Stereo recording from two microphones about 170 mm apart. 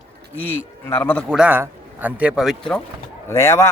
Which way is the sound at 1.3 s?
10° right (ahead or behind).